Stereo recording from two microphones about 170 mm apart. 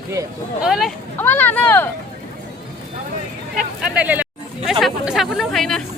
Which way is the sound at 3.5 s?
5° right (ahead or behind).